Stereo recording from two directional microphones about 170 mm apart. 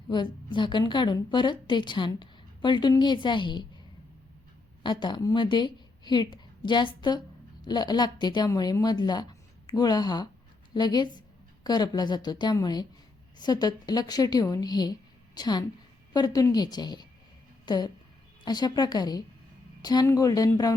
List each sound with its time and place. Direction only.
0.1 s a woman's voice: 25° left (ahead or behind)
4.8 s a woman's voice: 25° left (ahead or behind)